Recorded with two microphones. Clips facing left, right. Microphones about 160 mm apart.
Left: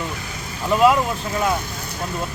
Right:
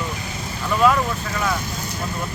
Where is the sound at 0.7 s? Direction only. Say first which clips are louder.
Left 2 dB; 20° left (ahead or behind).